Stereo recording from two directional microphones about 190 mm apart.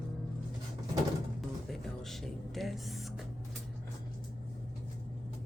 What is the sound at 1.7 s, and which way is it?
Speech, centre (ahead or behind).